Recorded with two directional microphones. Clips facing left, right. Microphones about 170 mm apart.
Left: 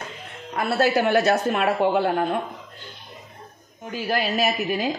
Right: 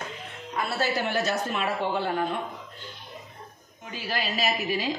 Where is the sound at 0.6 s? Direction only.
60° left (ahead or behind).